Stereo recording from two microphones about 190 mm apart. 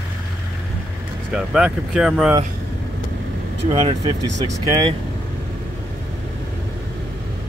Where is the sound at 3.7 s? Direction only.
30° right (ahead or behind).